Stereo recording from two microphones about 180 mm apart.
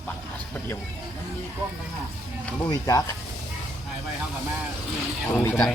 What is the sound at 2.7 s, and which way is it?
Speech, 20° left (ahead or behind).